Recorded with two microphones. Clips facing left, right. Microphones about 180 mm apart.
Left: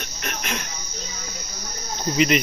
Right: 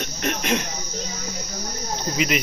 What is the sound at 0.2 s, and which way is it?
Cricket, 25° right (ahead or behind).